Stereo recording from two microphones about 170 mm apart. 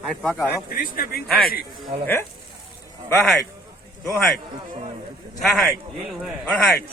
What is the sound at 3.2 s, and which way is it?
Speech, centre (ahead or behind).